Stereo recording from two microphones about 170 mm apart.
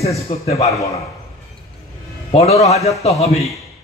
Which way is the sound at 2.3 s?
40° left (ahead or behind).